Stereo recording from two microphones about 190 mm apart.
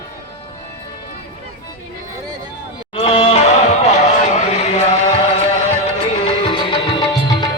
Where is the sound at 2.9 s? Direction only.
30° left (ahead or behind).